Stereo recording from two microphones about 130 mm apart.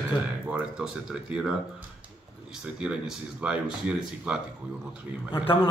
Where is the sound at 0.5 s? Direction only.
5° right (ahead or behind).